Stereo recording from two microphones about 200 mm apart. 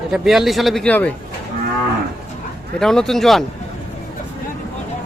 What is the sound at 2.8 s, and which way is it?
Speech, centre (ahead or behind).